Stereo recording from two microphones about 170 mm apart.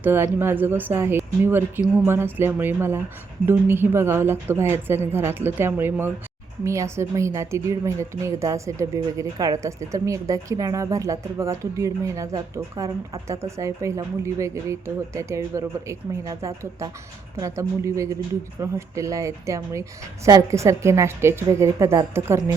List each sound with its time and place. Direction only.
0.0 s a woman's voice: 15° right (ahead or behind)